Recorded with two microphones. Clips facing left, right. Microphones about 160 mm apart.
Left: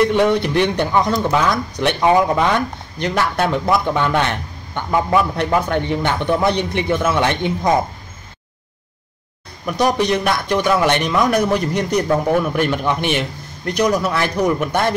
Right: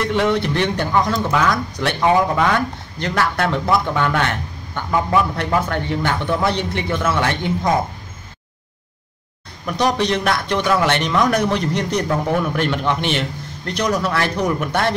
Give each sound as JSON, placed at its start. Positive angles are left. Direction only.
{"t": 0.0, "sound": "speech", "side_deg": 15}
{"t": 9.8, "sound": "speech", "side_deg": 10}